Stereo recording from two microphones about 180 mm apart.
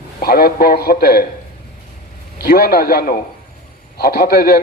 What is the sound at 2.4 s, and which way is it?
A man's voice, 60° left (ahead or behind).